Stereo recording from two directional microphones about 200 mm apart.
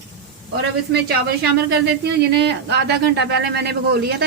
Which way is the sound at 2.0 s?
55° right (ahead or behind).